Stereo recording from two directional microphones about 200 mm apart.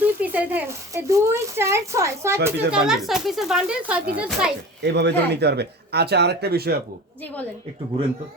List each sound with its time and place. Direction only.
0.0 s speech: 10° right (ahead or behind)
2.6 s speech: centre (ahead or behind)
4.8 s speech: 60° right (ahead or behind)